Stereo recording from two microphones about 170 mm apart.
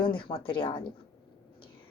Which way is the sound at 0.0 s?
30° left (ahead or behind).